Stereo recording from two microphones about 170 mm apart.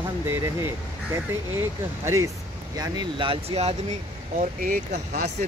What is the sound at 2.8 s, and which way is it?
Speech, 25° right (ahead or behind).